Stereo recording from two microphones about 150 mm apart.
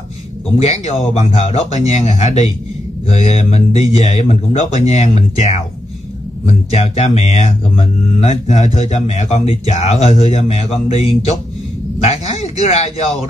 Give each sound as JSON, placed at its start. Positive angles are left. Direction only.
{"t": 0.6, "sound": "speech", "side_deg": 45}